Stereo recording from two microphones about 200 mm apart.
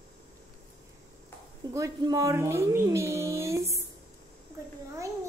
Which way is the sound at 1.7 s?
15° right (ahead or behind).